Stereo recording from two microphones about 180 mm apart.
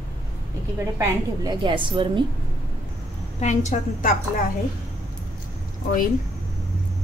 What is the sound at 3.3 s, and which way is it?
Speech, 40° left (ahead or behind).